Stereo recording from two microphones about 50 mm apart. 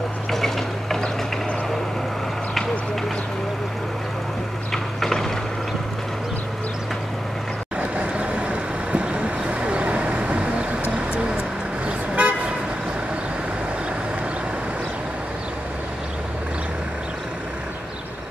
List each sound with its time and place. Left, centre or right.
0.3 s ratchet: centre
5.0 s a sound: centre
7.9 s vehicle: right
11.1 s toot: right